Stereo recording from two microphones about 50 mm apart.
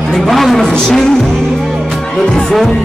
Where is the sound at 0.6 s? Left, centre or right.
Centre.